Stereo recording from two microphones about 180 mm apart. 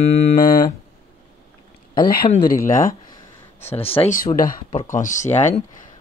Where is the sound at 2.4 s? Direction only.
15° left (ahead or behind).